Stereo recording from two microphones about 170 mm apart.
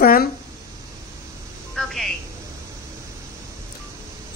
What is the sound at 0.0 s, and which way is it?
Speech, 60° left (ahead or behind).